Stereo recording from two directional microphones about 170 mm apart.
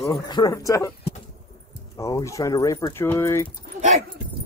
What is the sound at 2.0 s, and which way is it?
Speech, 20° left (ahead or behind).